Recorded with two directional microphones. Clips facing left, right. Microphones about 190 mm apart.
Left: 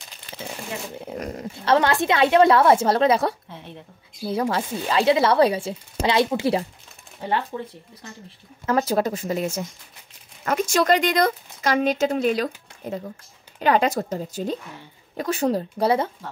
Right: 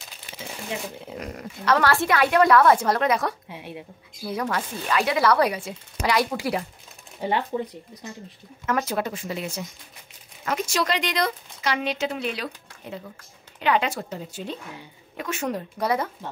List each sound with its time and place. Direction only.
1.0 s speech: 45° left (ahead or behind)
1.3 s speech: 30° left (ahead or behind)
3.4 s speech: 10° right (ahead or behind)
4.3 s speech: 30° left (ahead or behind)
7.2 s speech: 15° right (ahead or behind)
8.6 s speech: 35° left (ahead or behind)
13.6 s speech: 40° left (ahead or behind)